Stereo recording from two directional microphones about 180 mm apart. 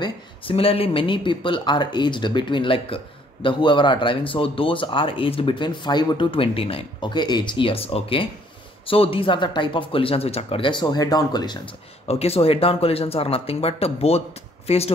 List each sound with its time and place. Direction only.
0.0 s speech: 30° left (ahead or behind)